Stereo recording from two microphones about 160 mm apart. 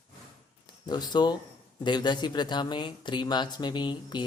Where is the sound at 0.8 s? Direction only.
25° left (ahead or behind).